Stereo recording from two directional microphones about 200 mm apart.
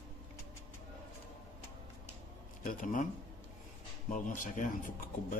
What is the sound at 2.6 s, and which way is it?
Speech, 40° left (ahead or behind).